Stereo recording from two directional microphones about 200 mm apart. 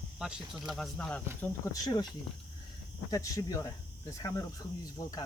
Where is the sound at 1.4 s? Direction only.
20° left (ahead or behind).